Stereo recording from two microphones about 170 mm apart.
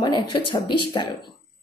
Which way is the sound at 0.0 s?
25° left (ahead or behind).